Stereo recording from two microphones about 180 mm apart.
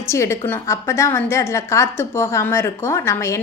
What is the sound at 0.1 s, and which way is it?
Speech, 15° left (ahead or behind).